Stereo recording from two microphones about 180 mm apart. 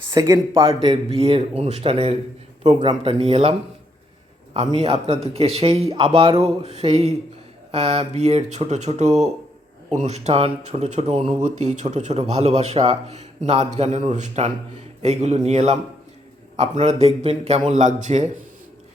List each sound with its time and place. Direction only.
0.1 s speech: 20° right (ahead or behind)
4.5 s speech: 35° right (ahead or behind)